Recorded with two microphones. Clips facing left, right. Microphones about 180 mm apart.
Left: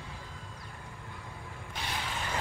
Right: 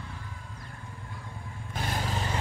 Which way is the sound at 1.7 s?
45° right (ahead or behind).